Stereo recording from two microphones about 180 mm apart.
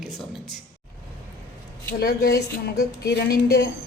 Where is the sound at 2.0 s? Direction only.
60° left (ahead or behind).